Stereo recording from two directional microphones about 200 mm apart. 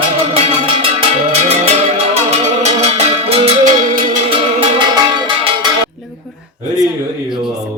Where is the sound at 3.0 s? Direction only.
30° right (ahead or behind).